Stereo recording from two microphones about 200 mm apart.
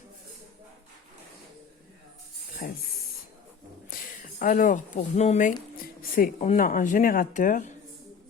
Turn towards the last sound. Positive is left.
turn(degrees=40)  # may be behind; listen again after turning